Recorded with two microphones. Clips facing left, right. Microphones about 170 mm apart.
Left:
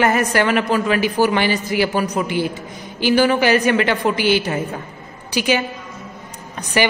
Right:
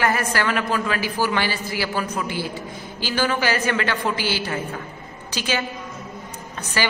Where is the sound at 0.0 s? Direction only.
20° left (ahead or behind).